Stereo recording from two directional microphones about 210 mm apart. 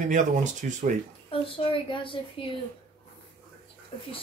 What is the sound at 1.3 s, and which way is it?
Speech, 25° left (ahead or behind).